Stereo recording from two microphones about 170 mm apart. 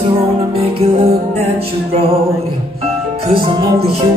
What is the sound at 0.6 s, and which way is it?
Music, 35° right (ahead or behind).